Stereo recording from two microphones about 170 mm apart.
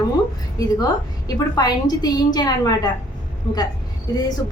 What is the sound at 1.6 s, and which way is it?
A woman's voice, 25° left (ahead or behind).